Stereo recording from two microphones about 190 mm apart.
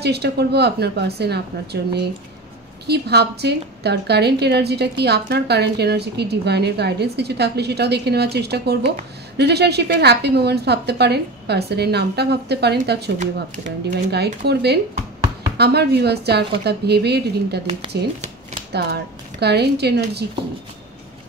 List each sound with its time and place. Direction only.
0.0 s a woman's voice: 60° right (ahead or behind)
14.1 s a woman's voice: 60° right (ahead or behind)
17.6 s speech: 30° right (ahead or behind)
18.7 s a woman's voice: 60° right (ahead or behind)